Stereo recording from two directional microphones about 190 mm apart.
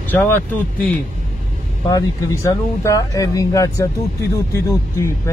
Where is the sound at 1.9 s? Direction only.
15° left (ahead or behind).